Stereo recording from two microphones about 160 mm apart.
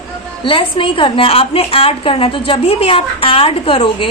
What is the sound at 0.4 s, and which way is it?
A woman's voice, 30° left (ahead or behind).